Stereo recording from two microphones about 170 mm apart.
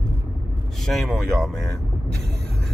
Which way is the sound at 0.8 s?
Centre (ahead or behind).